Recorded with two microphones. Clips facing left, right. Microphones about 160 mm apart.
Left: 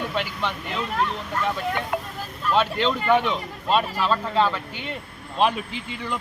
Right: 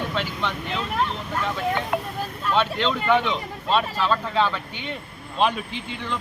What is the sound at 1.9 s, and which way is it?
Speech, 65° right (ahead or behind).